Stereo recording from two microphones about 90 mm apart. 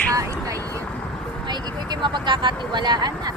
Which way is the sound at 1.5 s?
55° right (ahead or behind).